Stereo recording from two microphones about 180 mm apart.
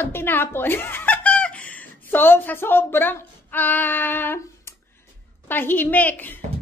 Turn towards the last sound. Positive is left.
turn(degrees=10)  # may be behind; listen again after turning